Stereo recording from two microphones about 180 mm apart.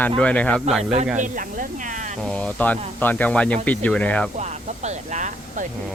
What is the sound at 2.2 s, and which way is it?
Speech, 5° left (ahead or behind).